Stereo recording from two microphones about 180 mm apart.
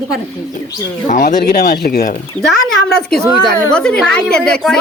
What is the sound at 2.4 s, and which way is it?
Speech, 5° left (ahead or behind).